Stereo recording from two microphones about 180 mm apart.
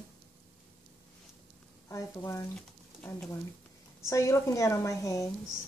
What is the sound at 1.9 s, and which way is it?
Speech, 15° left (ahead or behind).